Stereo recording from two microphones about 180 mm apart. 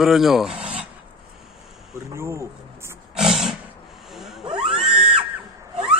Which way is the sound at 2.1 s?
15° right (ahead or behind).